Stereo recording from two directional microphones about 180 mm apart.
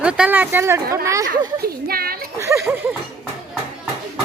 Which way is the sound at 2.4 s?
15° right (ahead or behind).